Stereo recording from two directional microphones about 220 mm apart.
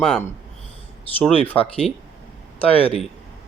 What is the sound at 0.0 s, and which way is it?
Speech, 5° left (ahead or behind).